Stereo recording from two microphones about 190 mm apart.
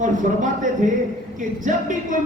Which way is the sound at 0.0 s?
40° right (ahead or behind).